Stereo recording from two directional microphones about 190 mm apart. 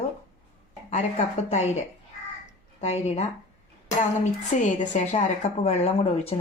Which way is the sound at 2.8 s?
35° left (ahead or behind).